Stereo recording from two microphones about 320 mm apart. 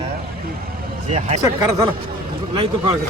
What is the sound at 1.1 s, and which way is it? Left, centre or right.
Speech, right.